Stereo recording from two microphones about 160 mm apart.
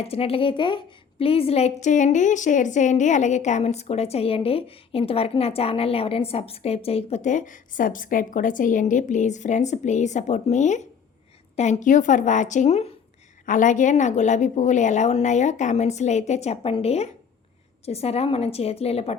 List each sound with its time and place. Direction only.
0.0 s a woman's voice: 40° left (ahead or behind)
1.8 s a woman's voice: 50° left (ahead or behind)
13.4 s a woman's voice: 55° left (ahead or behind)